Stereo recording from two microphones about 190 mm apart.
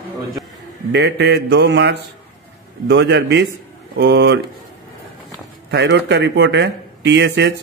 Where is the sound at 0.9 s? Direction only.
65° right (ahead or behind).